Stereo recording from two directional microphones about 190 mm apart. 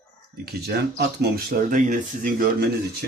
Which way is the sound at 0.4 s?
55° right (ahead or behind).